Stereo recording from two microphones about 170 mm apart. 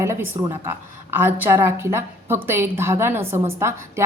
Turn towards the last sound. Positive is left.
turn(degrees=-15)  # may be behind; listen again after turning